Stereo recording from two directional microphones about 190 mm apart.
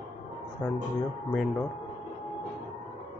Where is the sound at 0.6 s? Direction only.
10° left (ahead or behind).